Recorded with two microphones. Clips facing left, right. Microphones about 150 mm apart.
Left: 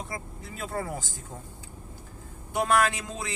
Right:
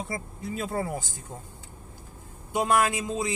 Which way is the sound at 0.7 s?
25° right (ahead or behind).